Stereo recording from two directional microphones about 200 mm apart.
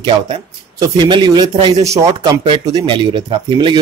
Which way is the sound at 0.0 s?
25° right (ahead or behind).